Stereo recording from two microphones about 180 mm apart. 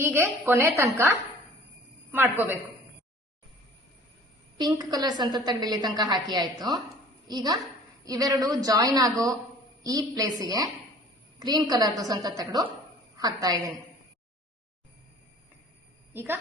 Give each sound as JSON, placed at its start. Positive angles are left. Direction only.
{"t": 0.0, "sound": "a woman's voice", "side_deg": -15}
{"t": 2.1, "sound": "a woman's voice", "side_deg": -10}
{"t": 4.5, "sound": "a woman's voice", "side_deg": -25}
{"t": 16.1, "sound": "a woman's voice", "side_deg": -10}